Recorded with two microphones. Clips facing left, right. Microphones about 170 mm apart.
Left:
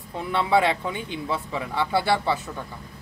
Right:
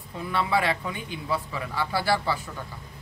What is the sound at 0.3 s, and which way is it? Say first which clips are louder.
A man's voice: left 4 dB; 25° left (ahead or behind).